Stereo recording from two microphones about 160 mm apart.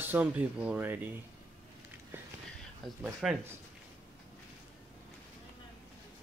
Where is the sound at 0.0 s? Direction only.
10° right (ahead or behind).